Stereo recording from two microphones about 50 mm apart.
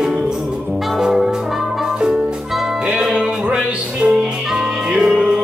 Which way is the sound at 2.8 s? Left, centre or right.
Centre.